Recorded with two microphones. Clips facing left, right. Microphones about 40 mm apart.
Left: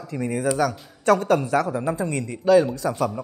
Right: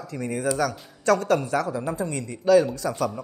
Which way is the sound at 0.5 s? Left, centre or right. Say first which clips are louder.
Left 3 dB; left.